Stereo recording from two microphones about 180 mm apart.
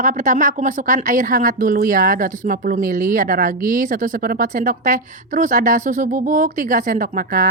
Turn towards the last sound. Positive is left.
turn(degrees=-50)  # may be behind; listen again after turning